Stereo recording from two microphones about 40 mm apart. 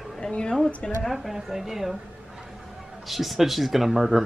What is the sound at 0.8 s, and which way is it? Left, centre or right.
Speech, left.